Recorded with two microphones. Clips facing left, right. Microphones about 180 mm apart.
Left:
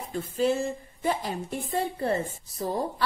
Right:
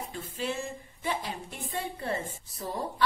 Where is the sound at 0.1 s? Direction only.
40° left (ahead or behind).